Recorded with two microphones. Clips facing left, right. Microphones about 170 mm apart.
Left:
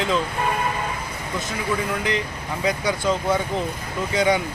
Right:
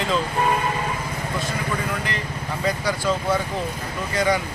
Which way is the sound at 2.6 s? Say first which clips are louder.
Left 1 dB; 20° left (ahead or behind).